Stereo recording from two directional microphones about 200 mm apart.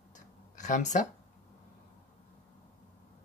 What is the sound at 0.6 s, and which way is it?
Speech, 35° left (ahead or behind).